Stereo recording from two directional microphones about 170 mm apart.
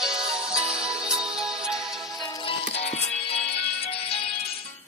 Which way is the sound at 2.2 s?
30° left (ahead or behind).